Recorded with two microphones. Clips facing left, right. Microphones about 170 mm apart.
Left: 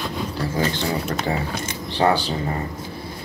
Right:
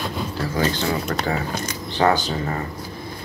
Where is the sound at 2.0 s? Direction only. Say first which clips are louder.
Even; 30° left (ahead or behind).